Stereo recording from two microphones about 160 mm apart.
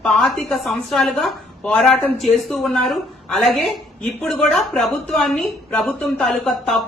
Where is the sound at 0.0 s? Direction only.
5° left (ahead or behind).